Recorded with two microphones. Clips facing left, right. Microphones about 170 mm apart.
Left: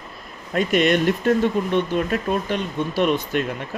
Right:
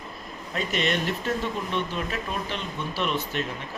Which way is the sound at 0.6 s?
50° left (ahead or behind).